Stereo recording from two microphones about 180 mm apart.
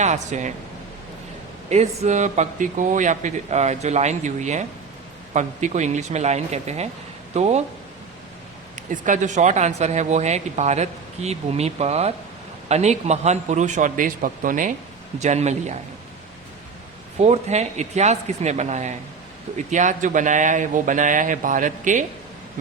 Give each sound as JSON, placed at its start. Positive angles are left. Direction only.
{"t": 0.0, "sound": "speech", "side_deg": -40}
{"t": 1.7, "sound": "speech", "side_deg": -40}
{"t": 8.9, "sound": "speech", "side_deg": -45}
{"t": 17.2, "sound": "speech", "side_deg": -35}